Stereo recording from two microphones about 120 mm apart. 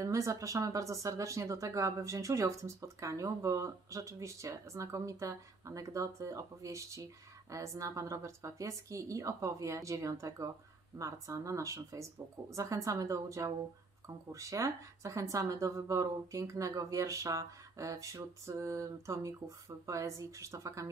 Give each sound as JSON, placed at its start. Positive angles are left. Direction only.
{"t": 0.0, "sound": "speech", "side_deg": -25}